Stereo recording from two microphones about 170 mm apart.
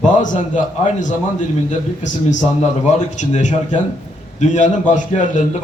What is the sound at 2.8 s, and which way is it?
A man's voice, 45° left (ahead or behind).